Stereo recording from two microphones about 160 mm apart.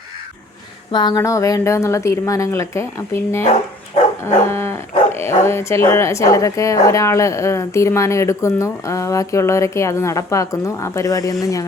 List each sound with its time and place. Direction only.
0.9 s speech: 30° left (ahead or behind)